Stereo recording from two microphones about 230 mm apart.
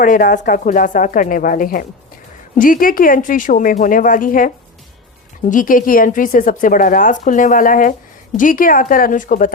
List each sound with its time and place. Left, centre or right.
0.0 s speech: left